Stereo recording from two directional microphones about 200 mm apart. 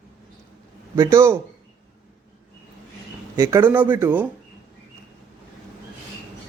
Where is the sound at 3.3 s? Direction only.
15° right (ahead or behind).